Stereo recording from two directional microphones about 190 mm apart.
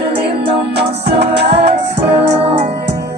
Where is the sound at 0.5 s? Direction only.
30° right (ahead or behind).